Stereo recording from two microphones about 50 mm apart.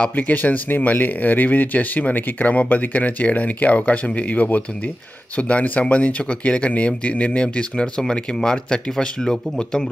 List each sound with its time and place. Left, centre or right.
0.1 s speech: left; by 9.8 s centre